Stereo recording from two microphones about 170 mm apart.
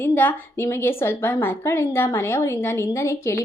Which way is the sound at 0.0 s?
10° left (ahead or behind).